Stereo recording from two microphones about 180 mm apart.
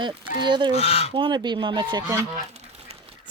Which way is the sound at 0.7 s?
35° left (ahead or behind).